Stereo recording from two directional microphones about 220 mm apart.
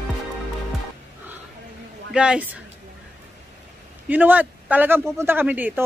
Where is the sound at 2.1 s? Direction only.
5° right (ahead or behind).